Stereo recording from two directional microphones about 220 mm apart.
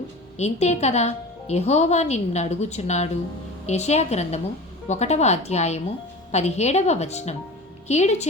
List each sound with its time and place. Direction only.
0.3 s a woman's voice: 30° left (ahead or behind)